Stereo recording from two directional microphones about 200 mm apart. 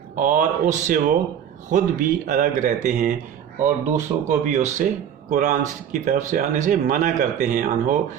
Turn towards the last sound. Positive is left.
turn(degrees=-40)  # may be behind; listen again after turning